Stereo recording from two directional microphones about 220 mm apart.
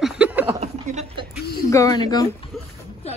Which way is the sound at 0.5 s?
30° right (ahead or behind).